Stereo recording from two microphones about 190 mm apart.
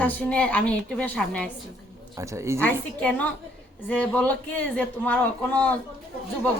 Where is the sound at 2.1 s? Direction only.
15° right (ahead or behind).